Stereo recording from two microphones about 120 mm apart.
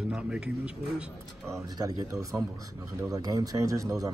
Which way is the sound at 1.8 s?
25° right (ahead or behind).